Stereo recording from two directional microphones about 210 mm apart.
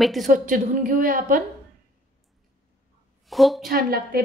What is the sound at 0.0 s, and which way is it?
Speech, centre (ahead or behind).